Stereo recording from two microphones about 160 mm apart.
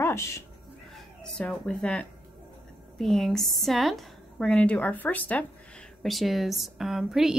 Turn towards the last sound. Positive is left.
turn(degrees=0)  # may be behind; listen again after turning